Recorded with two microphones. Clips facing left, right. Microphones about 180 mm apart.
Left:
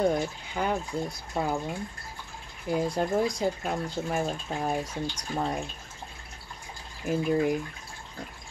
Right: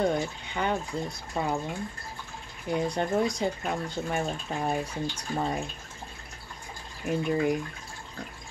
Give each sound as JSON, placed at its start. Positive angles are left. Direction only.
{"t": 0.0, "sound": "speech", "side_deg": 5}
{"t": 2.7, "sound": "speech", "side_deg": 5}
{"t": 7.1, "sound": "speech", "side_deg": 0}